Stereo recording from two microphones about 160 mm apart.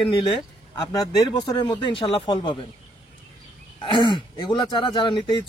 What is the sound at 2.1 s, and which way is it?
Speech, 35° left (ahead or behind).